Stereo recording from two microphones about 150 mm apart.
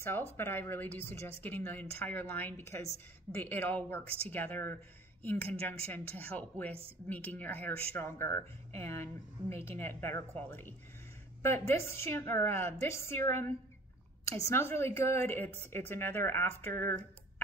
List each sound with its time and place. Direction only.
0.4 s speech: 15° left (ahead or behind)